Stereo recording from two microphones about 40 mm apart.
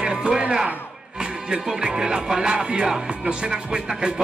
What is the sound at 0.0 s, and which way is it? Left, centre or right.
Music, right.